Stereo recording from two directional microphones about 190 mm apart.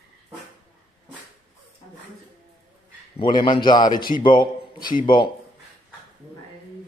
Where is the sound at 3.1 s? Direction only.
25° left (ahead or behind).